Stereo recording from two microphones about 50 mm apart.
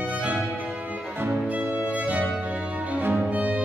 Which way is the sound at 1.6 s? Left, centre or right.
Right.